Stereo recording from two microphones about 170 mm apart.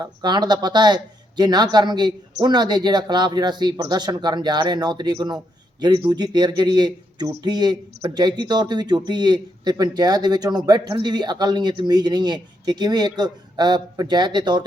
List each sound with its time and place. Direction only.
0.0 s speech: 25° right (ahead or behind)